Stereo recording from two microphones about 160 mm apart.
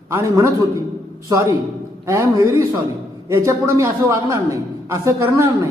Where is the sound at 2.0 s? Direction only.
20° right (ahead or behind).